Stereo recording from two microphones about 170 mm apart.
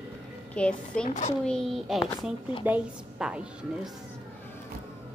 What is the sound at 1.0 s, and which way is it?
Speech, 45° left (ahead or behind).